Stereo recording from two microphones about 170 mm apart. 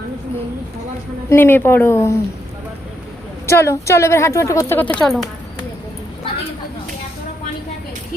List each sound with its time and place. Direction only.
1.3 s speech: 10° left (ahead or behind)
3.4 s speech: 15° left (ahead or behind)
5.0 s speech: centre (ahead or behind)